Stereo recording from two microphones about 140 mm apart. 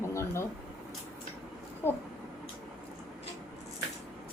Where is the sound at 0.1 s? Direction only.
20° left (ahead or behind).